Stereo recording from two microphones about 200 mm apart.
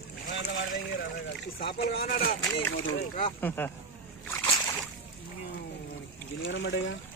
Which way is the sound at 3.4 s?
10° left (ahead or behind).